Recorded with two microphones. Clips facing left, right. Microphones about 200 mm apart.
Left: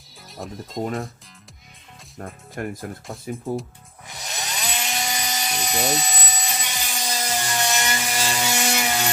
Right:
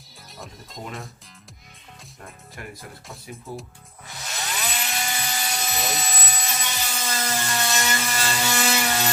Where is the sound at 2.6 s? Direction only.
50° left (ahead or behind).